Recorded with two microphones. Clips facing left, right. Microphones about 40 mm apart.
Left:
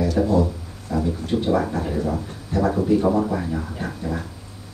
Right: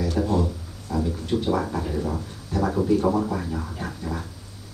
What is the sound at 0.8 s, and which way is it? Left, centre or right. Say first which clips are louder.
Speech: left 2 dB; left.